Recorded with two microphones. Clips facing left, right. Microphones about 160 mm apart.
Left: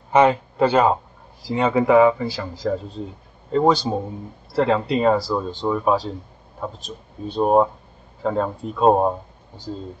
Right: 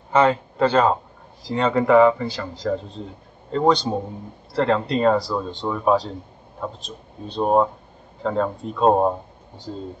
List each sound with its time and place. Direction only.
0.1 s speech: 15° left (ahead or behind)